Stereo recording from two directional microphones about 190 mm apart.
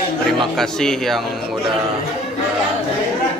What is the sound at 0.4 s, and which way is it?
Speech, centre (ahead or behind).